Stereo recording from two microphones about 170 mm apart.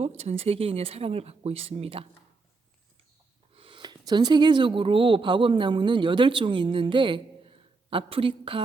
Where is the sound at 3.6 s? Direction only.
25° right (ahead or behind).